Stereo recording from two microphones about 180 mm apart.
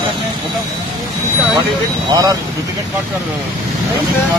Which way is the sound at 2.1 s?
20° right (ahead or behind).